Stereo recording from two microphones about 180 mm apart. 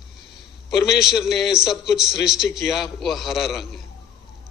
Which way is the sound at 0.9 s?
5° right (ahead or behind).